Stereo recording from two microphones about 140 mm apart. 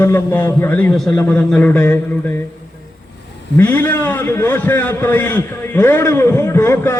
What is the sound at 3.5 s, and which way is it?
A man's voice, 15° left (ahead or behind).